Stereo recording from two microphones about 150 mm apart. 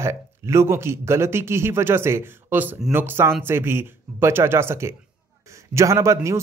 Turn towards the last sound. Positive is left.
turn(degrees=-20)  # may be behind; listen again after turning